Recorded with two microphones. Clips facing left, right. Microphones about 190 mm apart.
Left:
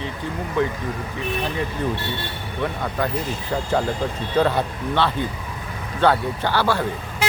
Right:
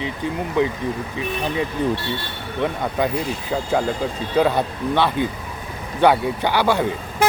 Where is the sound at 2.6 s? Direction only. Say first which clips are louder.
Right 3 dB; 15° right (ahead or behind).